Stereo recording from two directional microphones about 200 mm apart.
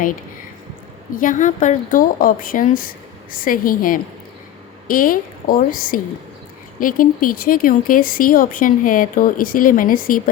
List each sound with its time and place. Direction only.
1.1 s a woman's voice: 40° left (ahead or behind)